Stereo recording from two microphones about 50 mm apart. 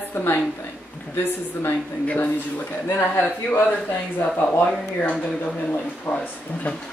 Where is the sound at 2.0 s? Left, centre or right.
Left.